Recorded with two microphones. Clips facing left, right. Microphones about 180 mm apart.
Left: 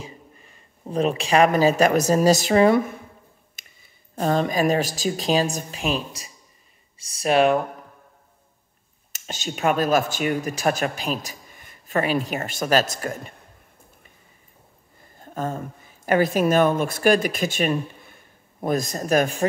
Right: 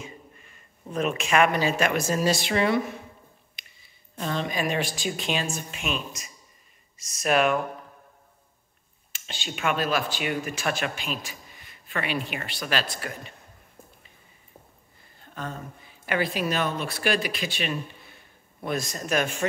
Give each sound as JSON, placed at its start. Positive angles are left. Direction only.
{"t": 0.0, "sound": "speech", "side_deg": 35}
{"t": 4.1, "sound": "speech", "side_deg": 45}
{"t": 9.1, "sound": "speech", "side_deg": 40}
{"t": 15.1, "sound": "a sound", "side_deg": 45}
{"t": 16.1, "sound": "speech", "side_deg": 45}